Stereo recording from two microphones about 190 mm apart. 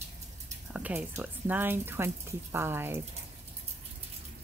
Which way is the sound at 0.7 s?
5° right (ahead or behind).